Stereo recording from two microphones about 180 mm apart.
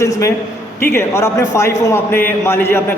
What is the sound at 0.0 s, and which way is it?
A man's voice, 15° left (ahead or behind).